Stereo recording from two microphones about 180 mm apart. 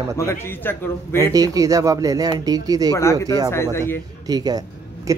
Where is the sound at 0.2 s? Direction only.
15° left (ahead or behind).